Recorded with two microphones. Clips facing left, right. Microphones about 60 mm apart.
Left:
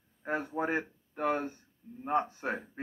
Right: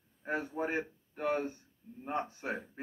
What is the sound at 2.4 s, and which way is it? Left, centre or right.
Speech, left.